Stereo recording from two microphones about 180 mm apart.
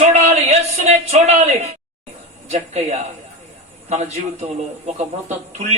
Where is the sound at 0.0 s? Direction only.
40° right (ahead or behind).